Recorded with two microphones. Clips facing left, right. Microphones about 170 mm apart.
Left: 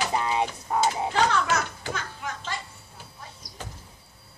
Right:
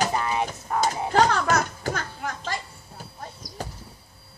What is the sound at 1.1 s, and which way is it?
Speech, 45° right (ahead or behind).